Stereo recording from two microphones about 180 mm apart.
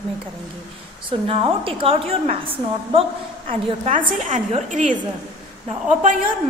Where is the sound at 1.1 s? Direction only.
30° right (ahead or behind).